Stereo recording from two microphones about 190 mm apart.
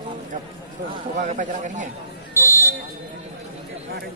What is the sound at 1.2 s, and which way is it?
Speech, 40° right (ahead or behind).